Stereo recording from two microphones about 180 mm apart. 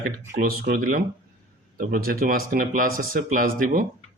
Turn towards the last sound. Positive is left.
turn(degrees=-50)  # may be behind; listen again after turning